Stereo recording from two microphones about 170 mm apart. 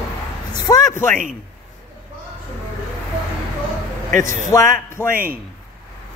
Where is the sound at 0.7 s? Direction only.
20° left (ahead or behind).